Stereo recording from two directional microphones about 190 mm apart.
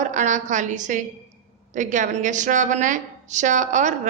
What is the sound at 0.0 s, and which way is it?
A woman's voice, 40° right (ahead or behind).